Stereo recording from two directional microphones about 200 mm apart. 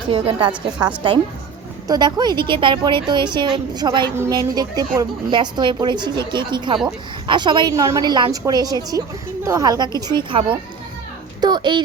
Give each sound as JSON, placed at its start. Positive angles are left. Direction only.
{"t": 0.1, "sound": "a woman's voice", "side_deg": -25}
{"t": 1.9, "sound": "a woman's voice", "side_deg": -20}